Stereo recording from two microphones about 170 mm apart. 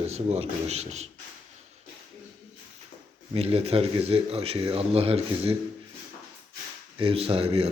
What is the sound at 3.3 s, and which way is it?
Speech, 35° right (ahead or behind).